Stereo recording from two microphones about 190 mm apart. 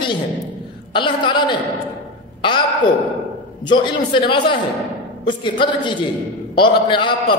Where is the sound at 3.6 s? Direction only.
25° left (ahead or behind).